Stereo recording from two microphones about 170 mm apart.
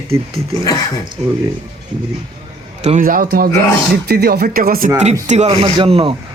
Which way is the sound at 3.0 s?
55° right (ahead or behind).